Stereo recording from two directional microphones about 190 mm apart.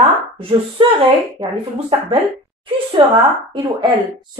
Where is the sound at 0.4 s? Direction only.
30° right (ahead or behind).